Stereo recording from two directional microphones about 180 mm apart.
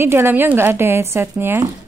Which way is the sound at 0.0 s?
15° right (ahead or behind).